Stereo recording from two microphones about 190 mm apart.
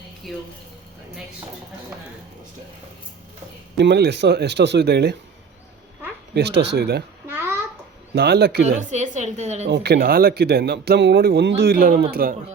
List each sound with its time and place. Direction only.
0.2 s speech: centre (ahead or behind)
3.8 s a man's voice: 60° right (ahead or behind)
6.3 s a man's voice: 60° right (ahead or behind)
7.3 s babbling: 10° right (ahead or behind)
8.1 s a man's voice: 55° right (ahead or behind)
8.6 s a woman's voice: 40° right (ahead or behind)
9.6 s a man's voice: 60° right (ahead or behind)